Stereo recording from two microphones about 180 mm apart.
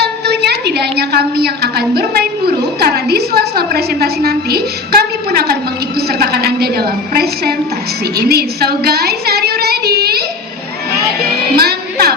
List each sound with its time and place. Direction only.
0.0 s a sound: 65° right (ahead or behind)
8.3 s child singing: 60° right (ahead or behind)
11.5 s music: 60° right (ahead or behind)